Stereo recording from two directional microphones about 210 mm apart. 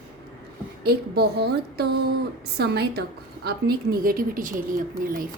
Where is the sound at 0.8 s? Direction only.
50° right (ahead or behind).